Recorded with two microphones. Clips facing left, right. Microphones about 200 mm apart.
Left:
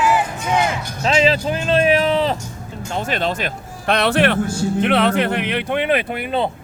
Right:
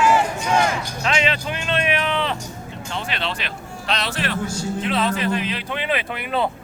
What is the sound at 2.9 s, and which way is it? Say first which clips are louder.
Speech: left 6 dB; 45° left (ahead or behind).